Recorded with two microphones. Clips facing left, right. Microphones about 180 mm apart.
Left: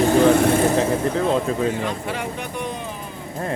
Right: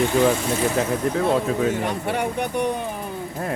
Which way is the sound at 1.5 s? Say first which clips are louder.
Even; 5° right (ahead or behind).